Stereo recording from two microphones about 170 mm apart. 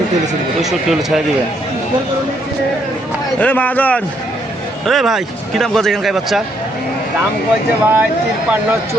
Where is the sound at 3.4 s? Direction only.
10° left (ahead or behind).